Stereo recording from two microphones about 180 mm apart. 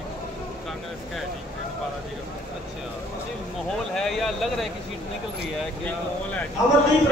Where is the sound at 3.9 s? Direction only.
Centre (ahead or behind).